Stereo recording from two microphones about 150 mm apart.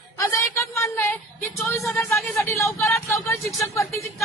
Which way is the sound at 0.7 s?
20° left (ahead or behind).